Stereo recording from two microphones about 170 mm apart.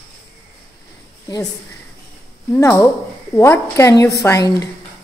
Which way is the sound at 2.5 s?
15° left (ahead or behind).